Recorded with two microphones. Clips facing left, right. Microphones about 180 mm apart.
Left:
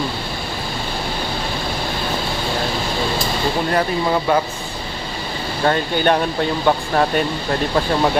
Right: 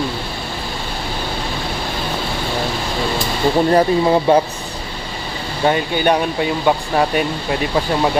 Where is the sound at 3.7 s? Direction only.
25° right (ahead or behind).